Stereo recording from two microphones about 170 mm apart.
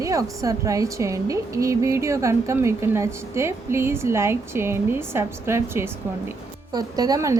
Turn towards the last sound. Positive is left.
turn(degrees=-20)  # may be behind; listen again after turning